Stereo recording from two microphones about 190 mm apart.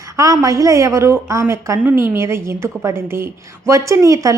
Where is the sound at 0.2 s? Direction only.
15° right (ahead or behind).